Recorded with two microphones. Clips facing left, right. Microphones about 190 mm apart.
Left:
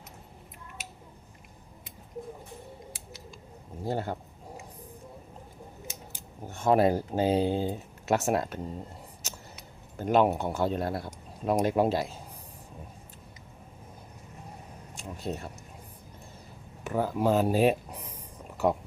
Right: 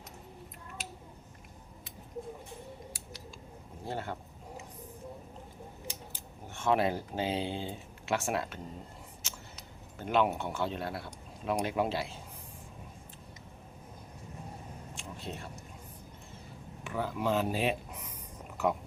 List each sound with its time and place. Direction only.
3.8 s speech: 40° left (ahead or behind)
6.5 s speech: 40° left (ahead or behind)
9.2 s vehicle: 40° left (ahead or behind)
10.0 s speech: 40° left (ahead or behind)
14.9 s a sound: 40° left (ahead or behind)
16.8 s speech: 40° left (ahead or behind)